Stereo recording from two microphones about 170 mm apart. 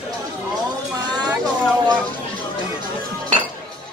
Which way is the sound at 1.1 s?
25° right (ahead or behind).